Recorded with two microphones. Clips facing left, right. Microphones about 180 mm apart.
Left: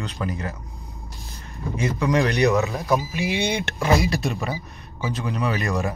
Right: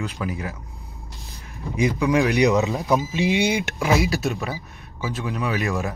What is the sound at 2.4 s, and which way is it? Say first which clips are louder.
Speech: right 1 dB; 15° right (ahead or behind).